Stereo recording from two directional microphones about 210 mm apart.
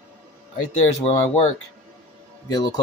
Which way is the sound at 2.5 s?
20° left (ahead or behind).